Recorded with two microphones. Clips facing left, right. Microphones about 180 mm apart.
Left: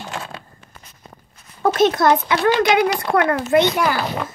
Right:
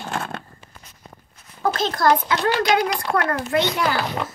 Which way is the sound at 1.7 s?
25° left (ahead or behind).